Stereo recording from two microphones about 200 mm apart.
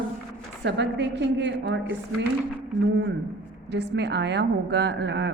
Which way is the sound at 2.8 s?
55° right (ahead or behind).